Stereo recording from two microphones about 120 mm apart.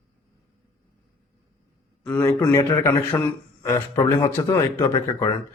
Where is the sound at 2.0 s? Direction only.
15° left (ahead or behind).